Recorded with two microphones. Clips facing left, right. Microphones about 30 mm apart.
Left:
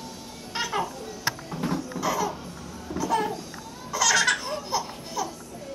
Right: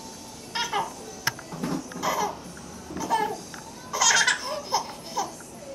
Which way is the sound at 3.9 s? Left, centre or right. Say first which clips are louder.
Even; centre.